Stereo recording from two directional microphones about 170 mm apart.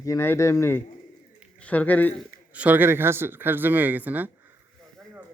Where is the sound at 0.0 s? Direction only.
15° left (ahead or behind).